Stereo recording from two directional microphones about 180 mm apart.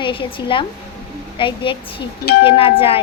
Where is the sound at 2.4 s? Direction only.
30° left (ahead or behind).